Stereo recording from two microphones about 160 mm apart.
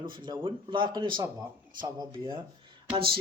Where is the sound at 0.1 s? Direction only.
30° right (ahead or behind).